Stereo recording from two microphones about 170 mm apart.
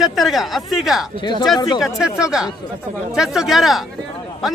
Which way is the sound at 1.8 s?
5° right (ahead or behind).